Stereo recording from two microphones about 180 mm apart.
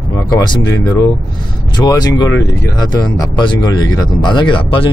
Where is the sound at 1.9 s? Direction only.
20° left (ahead or behind).